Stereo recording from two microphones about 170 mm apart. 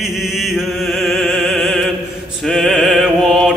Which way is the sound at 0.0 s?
Centre (ahead or behind).